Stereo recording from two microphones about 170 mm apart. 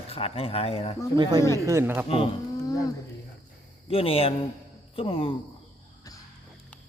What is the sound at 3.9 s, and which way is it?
A man's voice, 35° left (ahead or behind).